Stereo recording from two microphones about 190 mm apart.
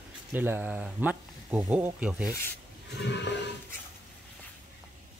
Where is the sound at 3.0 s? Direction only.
65° left (ahead or behind).